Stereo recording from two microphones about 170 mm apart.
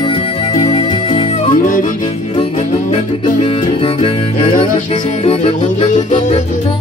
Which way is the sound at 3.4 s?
30° left (ahead or behind).